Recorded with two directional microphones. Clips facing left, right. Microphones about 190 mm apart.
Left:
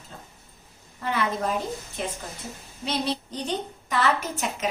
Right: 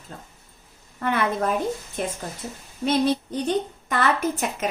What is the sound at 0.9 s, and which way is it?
Speech, 60° right (ahead or behind).